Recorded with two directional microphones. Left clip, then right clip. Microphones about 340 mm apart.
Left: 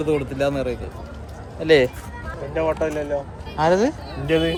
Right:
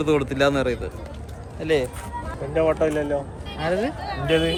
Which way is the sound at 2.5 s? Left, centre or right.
Right.